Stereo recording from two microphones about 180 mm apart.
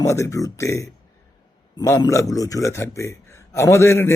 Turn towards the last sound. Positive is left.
turn(degrees=15)  # may be behind; listen again after turning